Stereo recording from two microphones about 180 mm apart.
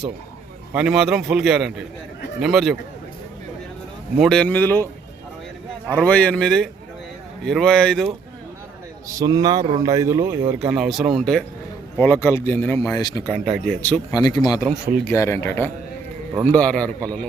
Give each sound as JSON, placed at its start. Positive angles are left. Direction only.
{"t": 0.7, "sound": "a man's voice", "side_deg": -5}
{"t": 4.2, "sound": "speech", "side_deg": 5}
{"t": 5.9, "sound": "a man's voice", "side_deg": 5}
{"t": 9.0, "sound": "speech", "side_deg": -20}
{"t": 11.9, "sound": "speech", "side_deg": 10}
{"t": 13.2, "sound": "a man's voice", "side_deg": 5}
{"t": 14.1, "sound": "a man's voice", "side_deg": 20}